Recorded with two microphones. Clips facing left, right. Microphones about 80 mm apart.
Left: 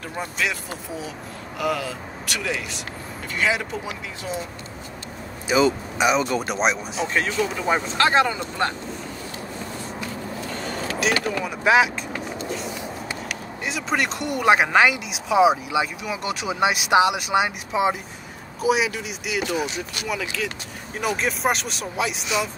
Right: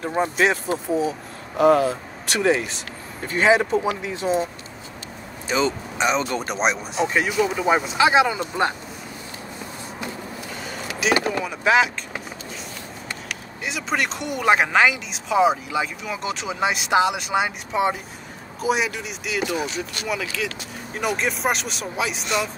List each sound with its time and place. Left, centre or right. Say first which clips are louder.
0.0 s speech: right 7 dB; right
5.5 s speech: left 3 dB; centre
7.2 s speech: right 1 dB; centre
10.5 s vehicle: left 4 dB; centre
11.4 s speech: left 2 dB; centre
13.7 s speech: even; centre